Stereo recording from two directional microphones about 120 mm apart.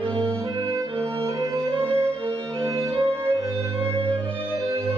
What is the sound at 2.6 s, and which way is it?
Music, 25° right (ahead or behind).